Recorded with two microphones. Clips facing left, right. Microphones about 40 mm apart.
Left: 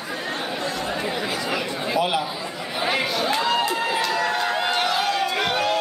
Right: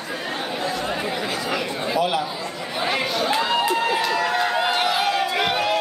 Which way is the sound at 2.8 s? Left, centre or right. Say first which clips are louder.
Even; centre.